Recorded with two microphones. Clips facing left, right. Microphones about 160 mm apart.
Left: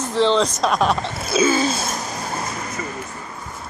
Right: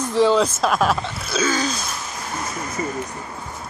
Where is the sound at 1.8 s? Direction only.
45° left (ahead or behind).